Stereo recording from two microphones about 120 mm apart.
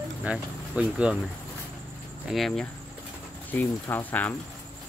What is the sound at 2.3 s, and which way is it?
Speech, centre (ahead or behind).